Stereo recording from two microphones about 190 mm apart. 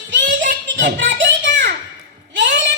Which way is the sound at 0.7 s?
70° right (ahead or behind).